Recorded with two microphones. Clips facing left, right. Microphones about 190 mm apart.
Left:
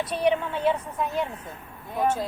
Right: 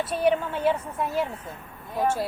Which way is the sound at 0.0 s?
5° right (ahead or behind).